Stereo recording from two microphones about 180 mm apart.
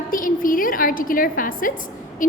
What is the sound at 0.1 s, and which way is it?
A woman's voice, 50° left (ahead or behind).